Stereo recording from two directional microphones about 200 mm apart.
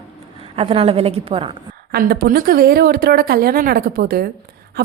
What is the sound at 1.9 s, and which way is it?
Speech, 50° right (ahead or behind).